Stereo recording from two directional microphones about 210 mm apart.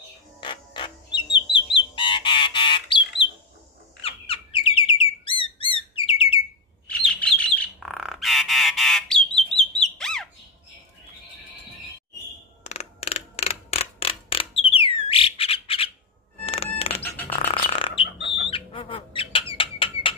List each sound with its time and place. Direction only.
0.4 s music: 25° left (ahead or behind)
1.8 s bird: 20° left (ahead or behind)
4.0 s bird: 25° left (ahead or behind)
6.9 s bird: 5° left (ahead or behind)
9.9 s squawk: centre (ahead or behind)
12.6 s mechanisms: 30° left (ahead or behind)
16.7 s a sound: 30° left (ahead or behind)
17.3 s music: 30° left (ahead or behind)
18.5 s bird: 25° left (ahead or behind)